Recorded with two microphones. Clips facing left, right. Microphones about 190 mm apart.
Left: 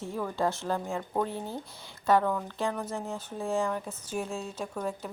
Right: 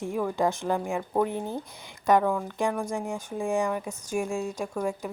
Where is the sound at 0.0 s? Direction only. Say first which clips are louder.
Right 4 dB; 15° right (ahead or behind).